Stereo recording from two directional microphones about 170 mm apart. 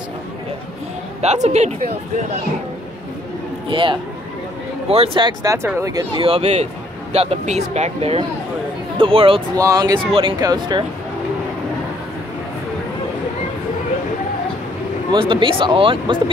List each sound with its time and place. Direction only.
1.2 s speech: 40° right (ahead or behind)
3.6 s speech: 30° right (ahead or behind)
6.2 s speech: 35° right (ahead or behind)
9.6 s speech: 20° right (ahead or behind)
15.0 s speech: 30° right (ahead or behind)